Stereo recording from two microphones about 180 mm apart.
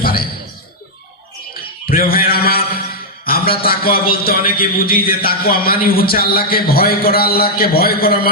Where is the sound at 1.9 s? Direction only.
55° left (ahead or behind).